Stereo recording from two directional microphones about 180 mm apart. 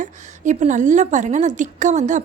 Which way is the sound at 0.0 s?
45° right (ahead or behind).